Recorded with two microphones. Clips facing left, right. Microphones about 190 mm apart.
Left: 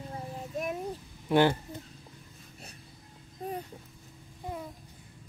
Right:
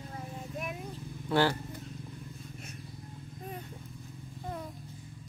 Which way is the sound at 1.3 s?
20° left (ahead or behind).